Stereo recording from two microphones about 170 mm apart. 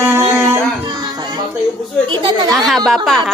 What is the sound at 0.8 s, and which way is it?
Music, 25° right (ahead or behind).